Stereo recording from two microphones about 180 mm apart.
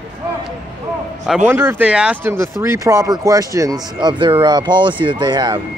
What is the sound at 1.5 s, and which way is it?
Speech, 10° right (ahead or behind).